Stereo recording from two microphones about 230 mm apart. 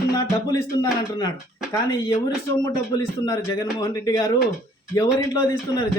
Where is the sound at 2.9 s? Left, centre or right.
Centre.